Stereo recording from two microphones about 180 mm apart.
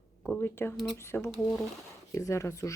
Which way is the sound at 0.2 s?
15° left (ahead or behind).